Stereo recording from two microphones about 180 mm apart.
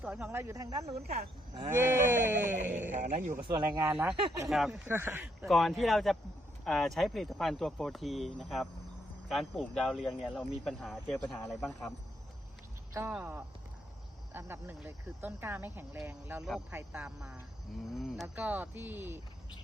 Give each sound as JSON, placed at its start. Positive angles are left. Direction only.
{"t": 0.0, "sound": "speech", "side_deg": -5}
{"t": 2.9, "sound": "a man's voice", "side_deg": -40}
{"t": 3.4, "sound": "speech", "side_deg": -20}
{"t": 4.4, "sound": "speech", "side_deg": 0}
{"t": 4.9, "sound": "speech", "side_deg": -15}
{"t": 5.5, "sound": "speech", "side_deg": 0}
{"t": 12.9, "sound": "speech", "side_deg": -10}